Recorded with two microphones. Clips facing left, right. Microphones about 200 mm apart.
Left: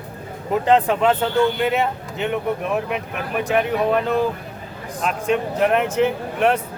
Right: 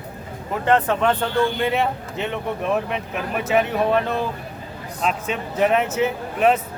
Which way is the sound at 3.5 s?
Centre (ahead or behind).